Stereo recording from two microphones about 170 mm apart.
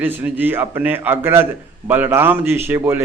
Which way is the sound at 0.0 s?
10° right (ahead or behind).